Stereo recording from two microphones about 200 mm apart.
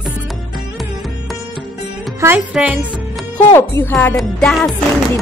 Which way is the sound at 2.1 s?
10° right (ahead or behind).